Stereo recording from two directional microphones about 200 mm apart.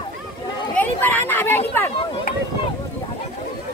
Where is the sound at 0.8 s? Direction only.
10° left (ahead or behind).